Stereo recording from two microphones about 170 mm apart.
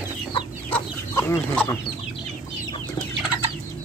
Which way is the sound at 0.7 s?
15° left (ahead or behind).